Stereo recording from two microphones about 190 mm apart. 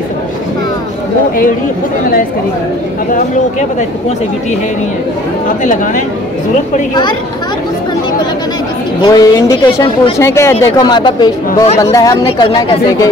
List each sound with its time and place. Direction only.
5.6 s speech: 40° left (ahead or behind)
9.0 s speech: 20° left (ahead or behind)